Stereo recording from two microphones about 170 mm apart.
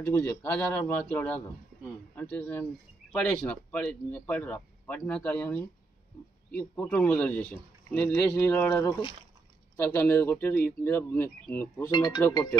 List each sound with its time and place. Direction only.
0.1 s speech: 10° left (ahead or behind)
11.9 s speech: 25° left (ahead or behind)